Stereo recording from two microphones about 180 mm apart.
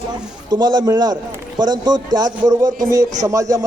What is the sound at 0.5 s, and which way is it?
A man's voice, 25° right (ahead or behind).